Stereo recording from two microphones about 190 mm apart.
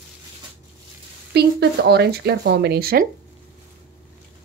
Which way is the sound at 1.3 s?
60° right (ahead or behind).